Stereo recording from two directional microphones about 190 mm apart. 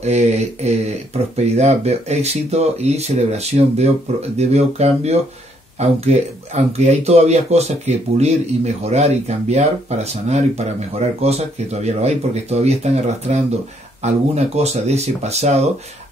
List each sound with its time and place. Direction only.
0.0 s speech: 35° right (ahead or behind)